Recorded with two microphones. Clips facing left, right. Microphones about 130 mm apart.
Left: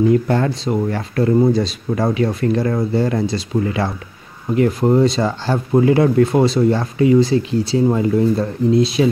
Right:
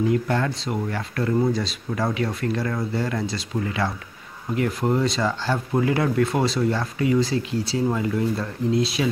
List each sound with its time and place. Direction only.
0.1 s speech: 30° left (ahead or behind)